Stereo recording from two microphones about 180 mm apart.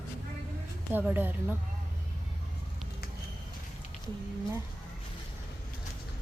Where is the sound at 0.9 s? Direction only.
10° right (ahead or behind).